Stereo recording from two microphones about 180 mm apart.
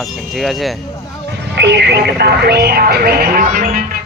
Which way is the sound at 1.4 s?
70° right (ahead or behind).